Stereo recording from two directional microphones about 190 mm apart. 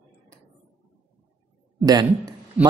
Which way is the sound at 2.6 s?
5° right (ahead or behind).